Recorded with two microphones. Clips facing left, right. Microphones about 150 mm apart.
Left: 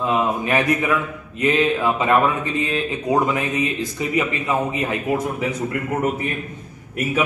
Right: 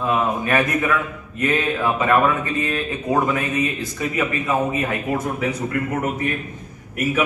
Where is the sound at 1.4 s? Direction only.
15° left (ahead or behind).